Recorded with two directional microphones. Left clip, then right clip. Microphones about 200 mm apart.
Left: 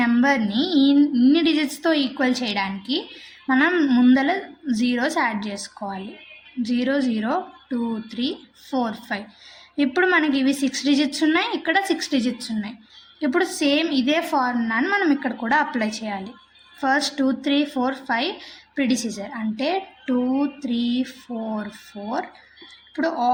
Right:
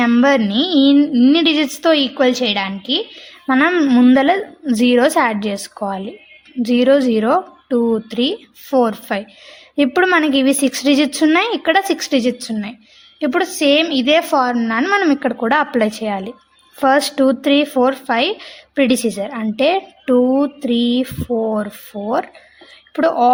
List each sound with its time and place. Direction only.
0.0 s speech: 50° right (ahead or behind)
23.0 s speech: 50° right (ahead or behind)